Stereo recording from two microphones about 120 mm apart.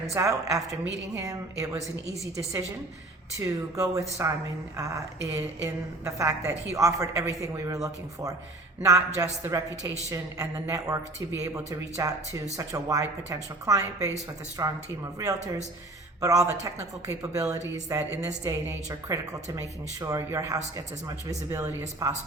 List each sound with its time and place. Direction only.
0.1 s a woman's voice: 25° right (ahead or behind)
3.3 s a woman's voice: 25° right (ahead or behind)
16.2 s a woman's voice: 30° right (ahead or behind)